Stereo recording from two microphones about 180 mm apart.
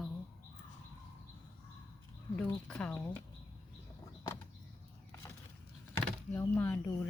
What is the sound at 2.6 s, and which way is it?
Speech, 5° left (ahead or behind).